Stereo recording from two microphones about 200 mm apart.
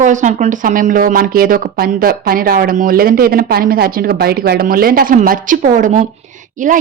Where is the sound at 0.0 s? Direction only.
40° right (ahead or behind).